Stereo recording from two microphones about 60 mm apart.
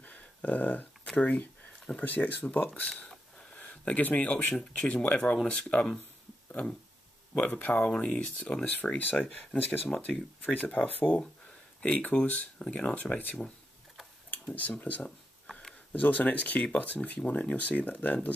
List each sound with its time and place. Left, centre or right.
0.0 s a sound: left
1.2 s speech: left
2.9 s a sound: centre
3.5 s speech: left
7.3 s speech: left
14.5 s speech: left